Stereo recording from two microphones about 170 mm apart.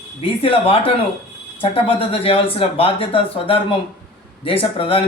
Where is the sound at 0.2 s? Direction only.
35° left (ahead or behind).